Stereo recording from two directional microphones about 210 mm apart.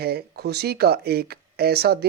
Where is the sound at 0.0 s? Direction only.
50° right (ahead or behind).